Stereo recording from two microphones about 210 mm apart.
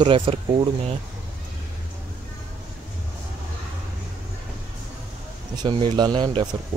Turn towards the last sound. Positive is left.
turn(degrees=-20)  # may be behind; listen again after turning